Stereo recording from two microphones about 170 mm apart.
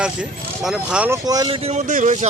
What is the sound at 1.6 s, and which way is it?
Speech, 45° right (ahead or behind).